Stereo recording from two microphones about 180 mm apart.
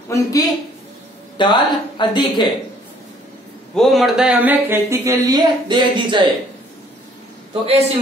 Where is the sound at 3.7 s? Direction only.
Centre (ahead or behind); by 6.2 s 25° right (ahead or behind).